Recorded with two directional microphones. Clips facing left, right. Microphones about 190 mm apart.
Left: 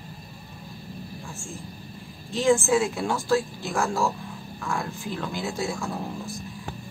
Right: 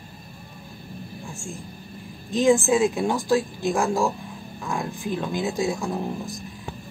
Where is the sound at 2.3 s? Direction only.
15° right (ahead or behind).